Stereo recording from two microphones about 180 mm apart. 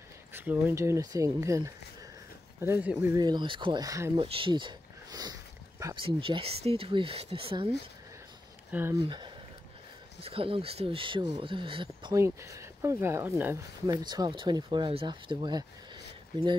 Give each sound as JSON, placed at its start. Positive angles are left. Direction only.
{"t": 0.3, "sound": "speech", "side_deg": -10}
{"t": 3.2, "sound": "speech", "side_deg": -25}
{"t": 4.2, "sound": "a sound", "side_deg": -30}
{"t": 6.0, "sound": "speech", "side_deg": -30}
{"t": 9.0, "sound": "speech", "side_deg": -25}